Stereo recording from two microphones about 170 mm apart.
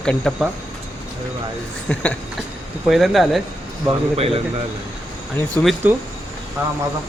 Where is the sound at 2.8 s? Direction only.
Centre (ahead or behind).